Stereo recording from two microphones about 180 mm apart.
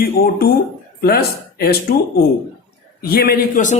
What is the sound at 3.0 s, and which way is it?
Speech, 60° left (ahead or behind).